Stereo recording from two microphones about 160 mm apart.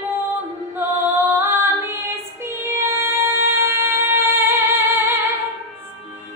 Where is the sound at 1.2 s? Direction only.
15° right (ahead or behind).